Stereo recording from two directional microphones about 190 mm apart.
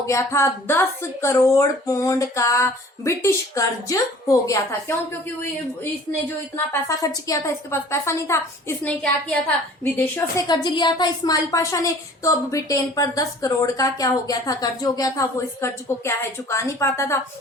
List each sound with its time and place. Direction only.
0.0 s a woman's voice: 15° left (ahead or behind)
6.8 s a woman's voice: 15° left (ahead or behind)